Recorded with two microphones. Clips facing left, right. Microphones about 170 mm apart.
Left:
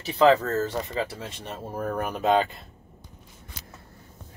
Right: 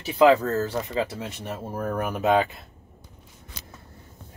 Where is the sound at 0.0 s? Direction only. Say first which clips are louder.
Right 2 dB; 10° right (ahead or behind).